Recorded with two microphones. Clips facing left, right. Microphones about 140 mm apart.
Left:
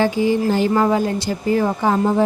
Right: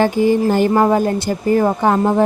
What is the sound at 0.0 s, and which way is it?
A woman's voice, 50° right (ahead or behind).